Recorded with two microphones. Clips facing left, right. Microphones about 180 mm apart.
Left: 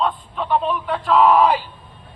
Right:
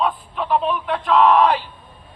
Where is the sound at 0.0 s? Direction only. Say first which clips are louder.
Even; centre (ahead or behind).